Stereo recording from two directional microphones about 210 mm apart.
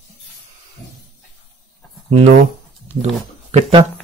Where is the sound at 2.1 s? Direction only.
30° right (ahead or behind).